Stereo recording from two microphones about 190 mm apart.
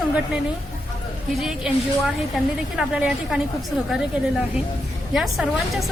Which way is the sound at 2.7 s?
5° right (ahead or behind).